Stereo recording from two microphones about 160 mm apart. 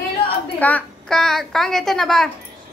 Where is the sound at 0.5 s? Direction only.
10° left (ahead or behind).